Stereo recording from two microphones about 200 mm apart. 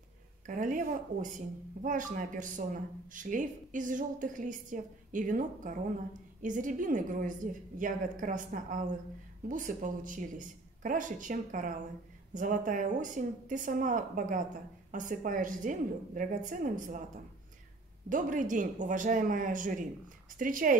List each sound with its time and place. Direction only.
0.5 s speech: 40° right (ahead or behind)
18.1 s speech: 40° right (ahead or behind)